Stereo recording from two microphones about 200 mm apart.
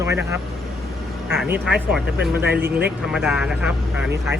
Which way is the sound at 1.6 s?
5° right (ahead or behind).